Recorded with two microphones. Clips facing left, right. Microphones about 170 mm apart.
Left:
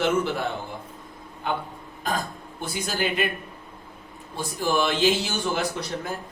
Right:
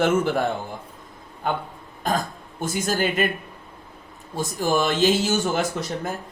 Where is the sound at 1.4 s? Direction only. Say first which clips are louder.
Right 2 dB; 45° right (ahead or behind).